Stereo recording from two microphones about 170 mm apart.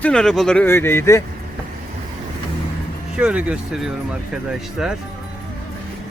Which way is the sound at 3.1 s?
5° right (ahead or behind).